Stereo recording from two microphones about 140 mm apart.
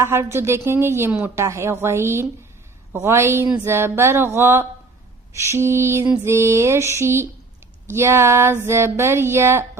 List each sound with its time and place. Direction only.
0.0 s a woman's voice: 20° right (ahead or behind)
5.3 s a sound: 20° right (ahead or behind)
9.0 s a woman's voice: 20° right (ahead or behind)